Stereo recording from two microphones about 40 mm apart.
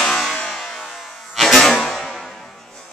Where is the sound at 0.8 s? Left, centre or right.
Centre.